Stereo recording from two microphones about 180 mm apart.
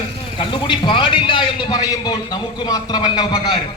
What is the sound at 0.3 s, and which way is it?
A man's voice, 25° left (ahead or behind).